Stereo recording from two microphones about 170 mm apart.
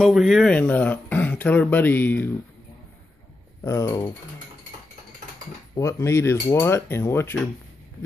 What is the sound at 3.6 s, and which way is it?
Speech, 20° left (ahead or behind).